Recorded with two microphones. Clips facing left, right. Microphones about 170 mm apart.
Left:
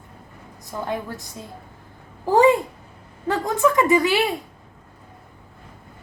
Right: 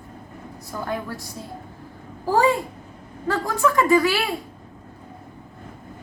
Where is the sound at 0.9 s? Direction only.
20° left (ahead or behind).